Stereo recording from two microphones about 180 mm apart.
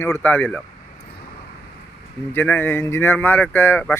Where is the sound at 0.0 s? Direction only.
10° left (ahead or behind).